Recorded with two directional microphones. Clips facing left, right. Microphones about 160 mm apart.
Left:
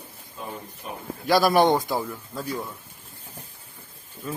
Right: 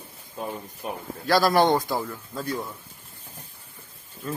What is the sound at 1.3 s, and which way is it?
Speech, 15° left (ahead or behind).